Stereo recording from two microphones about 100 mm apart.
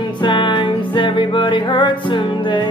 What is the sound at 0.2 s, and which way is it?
Music, 55° left (ahead or behind).